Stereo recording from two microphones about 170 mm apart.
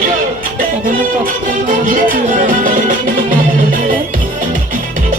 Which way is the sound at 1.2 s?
55° right (ahead or behind).